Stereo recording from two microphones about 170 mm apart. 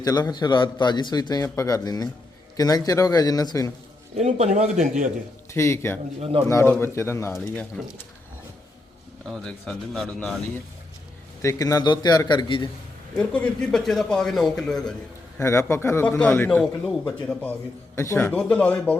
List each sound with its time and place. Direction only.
0.0 s a man's voice: 20° left (ahead or behind)
4.1 s a man's voice: 40° right (ahead or behind)
5.5 s a man's voice: 15° left (ahead or behind)
6.1 s a man's voice: 35° right (ahead or behind)
6.5 s a man's voice: 15° left (ahead or behind)
9.2 s a man's voice: centre (ahead or behind)
11.4 s a man's voice: 20° left (ahead or behind)
13.1 s a man's voice: 5° left (ahead or behind)
15.4 s a man's voice: 15° left (ahead or behind)